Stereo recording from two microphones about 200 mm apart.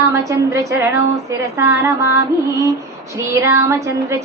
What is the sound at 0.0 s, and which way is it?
A woman's voice, 15° right (ahead or behind).